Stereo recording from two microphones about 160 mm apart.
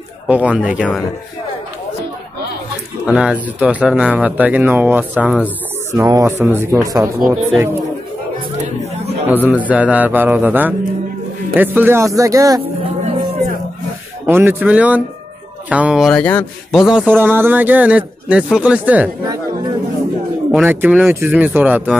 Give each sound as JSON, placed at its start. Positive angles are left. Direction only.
{"t": 0.3, "sound": "a man's voice", "side_deg": -10}
{"t": 3.1, "sound": "a man's voice", "side_deg": -5}
{"t": 9.3, "sound": "a man's voice", "side_deg": -10}
{"t": 14.2, "sound": "a man's voice", "side_deg": -15}
{"t": 16.7, "sound": "a man's voice", "side_deg": -5}
{"t": 19.2, "sound": "speech", "side_deg": -25}
{"t": 20.5, "sound": "a man's voice", "side_deg": -10}